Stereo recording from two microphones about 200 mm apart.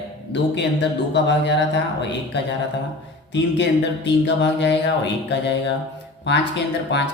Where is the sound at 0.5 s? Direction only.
60° left (ahead or behind).